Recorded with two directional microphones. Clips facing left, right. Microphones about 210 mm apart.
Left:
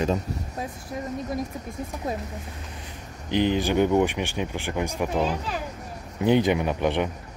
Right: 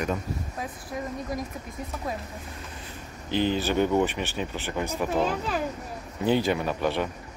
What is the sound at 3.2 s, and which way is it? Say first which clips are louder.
Speech: left 2 dB; 15° left (ahead or behind).